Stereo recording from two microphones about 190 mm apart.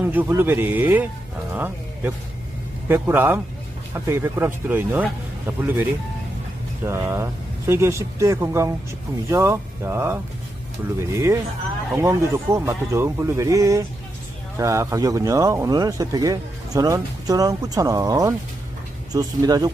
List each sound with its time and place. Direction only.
0.0 s speech: 10° right (ahead or behind)